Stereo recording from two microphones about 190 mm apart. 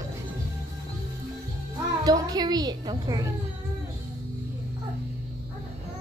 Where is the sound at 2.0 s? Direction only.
20° right (ahead or behind).